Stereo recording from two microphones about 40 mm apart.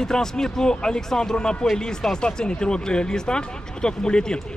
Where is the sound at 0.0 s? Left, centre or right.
Centre.